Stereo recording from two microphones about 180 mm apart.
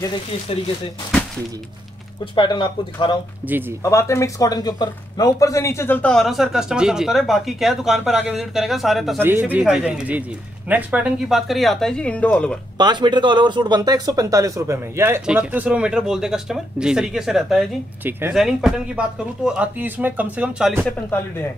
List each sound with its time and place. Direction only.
2.3 s speech: 25° left (ahead or behind); by 9.2 s centre (ahead or behind)
9.2 s speech: 10° right (ahead or behind); by 12.5 s 10° left (ahead or behind)
12.7 s speech: 25° right (ahead or behind); by 20.8 s 5° right (ahead or behind)